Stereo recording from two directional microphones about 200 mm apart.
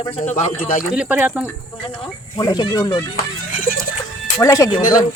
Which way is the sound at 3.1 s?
45° left (ahead or behind).